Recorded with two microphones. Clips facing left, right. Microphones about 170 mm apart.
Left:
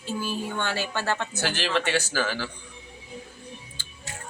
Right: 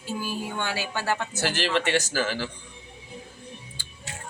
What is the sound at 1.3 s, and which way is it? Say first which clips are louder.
Speech: right 1 dB; 45° right (ahead or behind).